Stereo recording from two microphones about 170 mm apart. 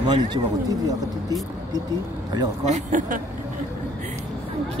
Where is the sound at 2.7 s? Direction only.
45° right (ahead or behind).